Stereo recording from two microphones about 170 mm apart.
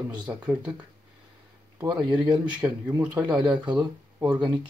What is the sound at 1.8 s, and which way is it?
Speech, 25° right (ahead or behind).